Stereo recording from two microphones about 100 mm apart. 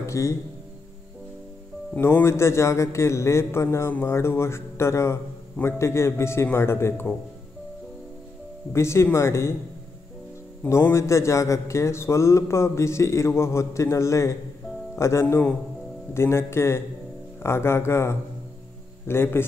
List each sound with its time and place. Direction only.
0.0 s speech: 30° left (ahead or behind)
2.0 s a man's voice: 25° left (ahead or behind)
8.7 s a man's voice: 25° left (ahead or behind)
10.7 s a man's voice: 25° left (ahead or behind)